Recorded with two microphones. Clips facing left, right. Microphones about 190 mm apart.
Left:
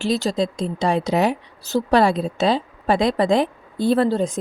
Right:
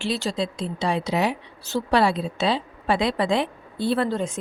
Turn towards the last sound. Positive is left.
turn(degrees=35)  # may be behind; listen again after turning